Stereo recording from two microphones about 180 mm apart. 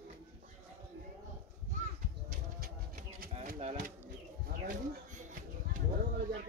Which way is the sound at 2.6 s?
55° right (ahead or behind).